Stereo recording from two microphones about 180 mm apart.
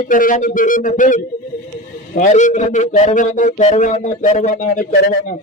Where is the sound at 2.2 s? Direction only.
45° left (ahead or behind).